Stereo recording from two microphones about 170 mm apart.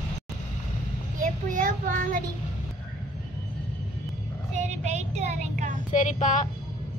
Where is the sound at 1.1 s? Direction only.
50° right (ahead or behind).